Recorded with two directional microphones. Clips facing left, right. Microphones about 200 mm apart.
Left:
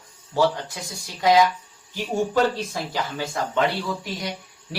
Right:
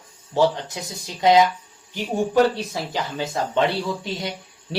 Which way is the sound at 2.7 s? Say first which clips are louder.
Right 1 dB; 20° right (ahead or behind).